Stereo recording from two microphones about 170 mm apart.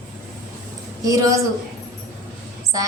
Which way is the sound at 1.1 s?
20° right (ahead or behind).